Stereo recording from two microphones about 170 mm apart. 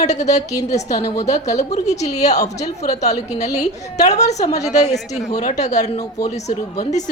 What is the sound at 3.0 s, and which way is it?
Speech, 40° left (ahead or behind).